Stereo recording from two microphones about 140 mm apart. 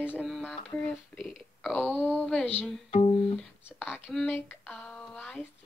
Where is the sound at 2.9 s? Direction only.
45° left (ahead or behind).